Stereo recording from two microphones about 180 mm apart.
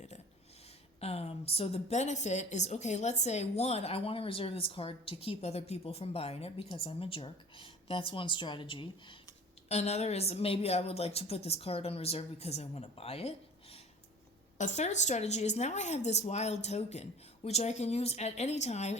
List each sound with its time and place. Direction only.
0.9 s a woman's voice: 35° left (ahead or behind)